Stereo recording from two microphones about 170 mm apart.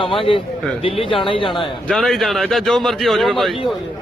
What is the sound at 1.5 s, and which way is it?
Speech, centre (ahead or behind).